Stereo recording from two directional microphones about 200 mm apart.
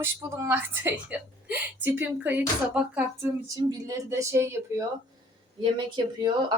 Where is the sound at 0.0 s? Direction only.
15° right (ahead or behind).